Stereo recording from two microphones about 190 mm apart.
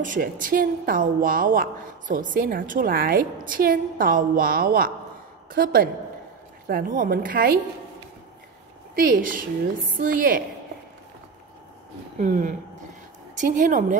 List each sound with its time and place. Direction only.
0.0 s a woman's voice: 45° right (ahead or behind)
9.3 s a woman's voice: 45° right (ahead or behind)
12.2 s a woman's voice: 45° right (ahead or behind)